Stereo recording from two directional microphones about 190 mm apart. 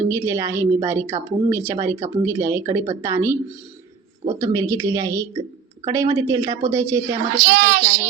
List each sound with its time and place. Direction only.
0.1 s speech: 15° right (ahead or behind)
4.4 s speech: 20° right (ahead or behind)
7.3 s a child's voice: 50° right (ahead or behind)